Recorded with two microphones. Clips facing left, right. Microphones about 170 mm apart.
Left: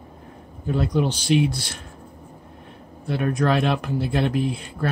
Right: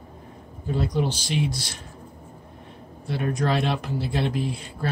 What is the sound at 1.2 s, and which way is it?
Speech, 60° left (ahead or behind).